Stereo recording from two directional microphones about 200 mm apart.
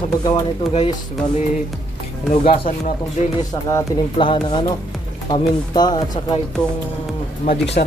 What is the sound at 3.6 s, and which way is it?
Speech, 20° left (ahead or behind).